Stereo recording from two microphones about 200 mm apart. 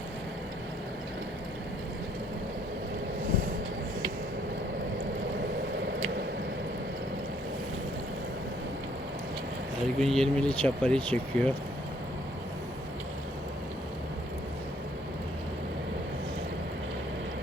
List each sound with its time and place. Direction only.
9.8 s speech: centre (ahead or behind)